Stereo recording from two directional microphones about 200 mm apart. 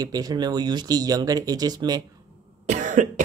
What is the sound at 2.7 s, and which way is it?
Cough, 40° right (ahead or behind).